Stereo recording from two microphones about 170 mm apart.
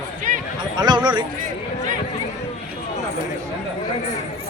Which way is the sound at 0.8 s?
25° right (ahead or behind).